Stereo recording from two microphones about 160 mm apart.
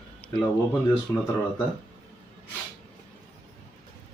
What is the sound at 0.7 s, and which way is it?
Speech, 10° left (ahead or behind).